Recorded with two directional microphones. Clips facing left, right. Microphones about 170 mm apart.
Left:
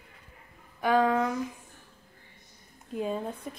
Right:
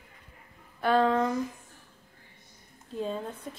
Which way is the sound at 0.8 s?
10° left (ahead or behind).